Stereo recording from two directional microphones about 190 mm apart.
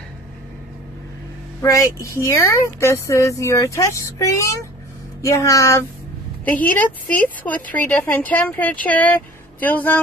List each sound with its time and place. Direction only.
1.6 s speech: 15° left (ahead or behind)